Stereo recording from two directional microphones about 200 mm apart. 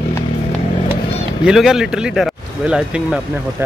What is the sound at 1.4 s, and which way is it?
Speech, 5° right (ahead or behind).